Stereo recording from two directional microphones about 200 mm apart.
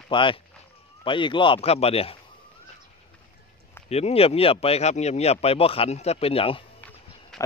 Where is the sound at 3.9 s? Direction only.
30° left (ahead or behind).